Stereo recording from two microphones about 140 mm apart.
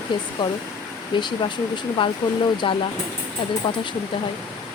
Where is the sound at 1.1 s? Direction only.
35° left (ahead or behind).